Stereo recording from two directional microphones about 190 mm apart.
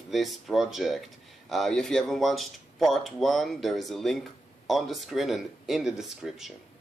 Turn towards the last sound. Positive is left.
turn(degrees=0)  # may be behind; listen again after turning